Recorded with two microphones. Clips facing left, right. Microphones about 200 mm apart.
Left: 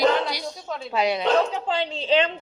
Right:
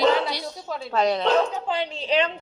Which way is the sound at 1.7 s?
25° left (ahead or behind).